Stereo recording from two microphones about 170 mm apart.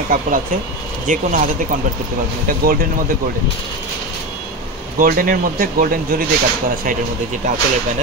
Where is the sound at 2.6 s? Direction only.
60° right (ahead or behind).